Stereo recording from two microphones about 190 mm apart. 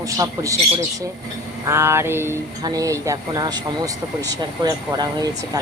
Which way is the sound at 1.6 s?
15° right (ahead or behind).